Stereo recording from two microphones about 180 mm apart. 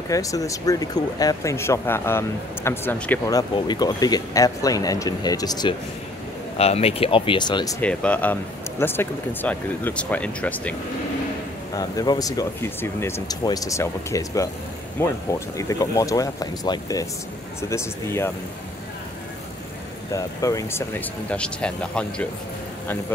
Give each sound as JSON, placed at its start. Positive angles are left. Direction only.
{"t": 0.1, "sound": "speech", "side_deg": 20}
{"t": 6.6, "sound": "speech", "side_deg": 35}
{"t": 7.8, "sound": "speech", "side_deg": 5}
{"t": 11.7, "sound": "speech", "side_deg": 20}
{"t": 20.2, "sound": "speech", "side_deg": 20}
{"t": 21.3, "sound": "speech", "side_deg": 5}